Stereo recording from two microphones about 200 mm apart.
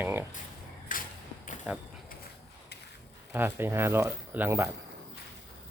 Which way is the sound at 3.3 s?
10° right (ahead or behind).